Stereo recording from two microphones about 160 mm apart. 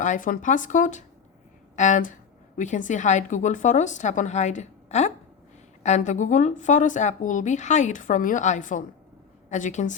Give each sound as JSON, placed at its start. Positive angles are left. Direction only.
{"t": 0.0, "sound": "speech", "side_deg": 55}